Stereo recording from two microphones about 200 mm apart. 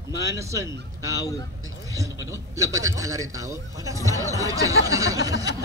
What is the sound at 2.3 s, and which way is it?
Speech, 15° right (ahead or behind).